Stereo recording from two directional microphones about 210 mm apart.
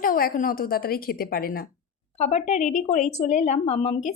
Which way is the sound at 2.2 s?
30° left (ahead or behind).